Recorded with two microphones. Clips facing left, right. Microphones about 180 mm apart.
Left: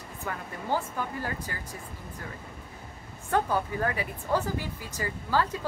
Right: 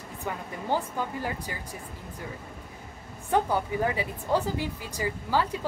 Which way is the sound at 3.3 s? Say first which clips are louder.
Right 2 dB; 15° right (ahead or behind).